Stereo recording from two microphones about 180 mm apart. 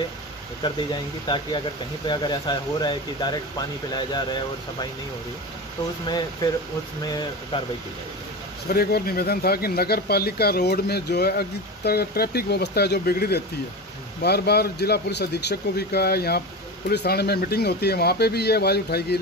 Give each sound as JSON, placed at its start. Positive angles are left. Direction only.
{"t": 1.2, "sound": "speech", "side_deg": 25}
{"t": 6.0, "sound": "speech", "side_deg": 25}
{"t": 7.5, "sound": "speech", "side_deg": 30}
{"t": 8.7, "sound": "speech", "side_deg": 60}